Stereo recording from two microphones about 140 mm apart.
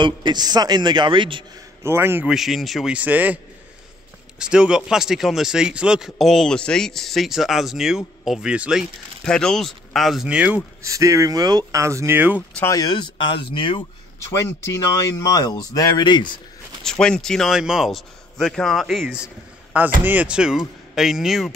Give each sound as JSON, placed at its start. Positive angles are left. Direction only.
{"t": 0.0, "sound": "a man's voice", "side_deg": -35}
{"t": 1.8, "sound": "a man's voice", "side_deg": -20}
{"t": 2.2, "sound": "speech", "side_deg": 0}
{"t": 4.4, "sound": "speech", "side_deg": -5}
{"t": 9.2, "sound": "speech", "side_deg": 5}
{"t": 10.8, "sound": "speech", "side_deg": -20}
{"t": 12.4, "sound": "speech", "side_deg": 10}
{"t": 12.7, "sound": "speech", "side_deg": 30}
{"t": 14.2, "sound": "speech", "side_deg": 20}
{"t": 16.8, "sound": "speech", "side_deg": 5}